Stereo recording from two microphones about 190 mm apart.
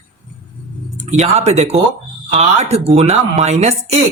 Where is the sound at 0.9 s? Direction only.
35° right (ahead or behind).